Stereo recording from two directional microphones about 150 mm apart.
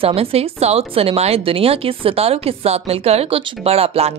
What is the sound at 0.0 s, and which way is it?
Speech, 40° right (ahead or behind).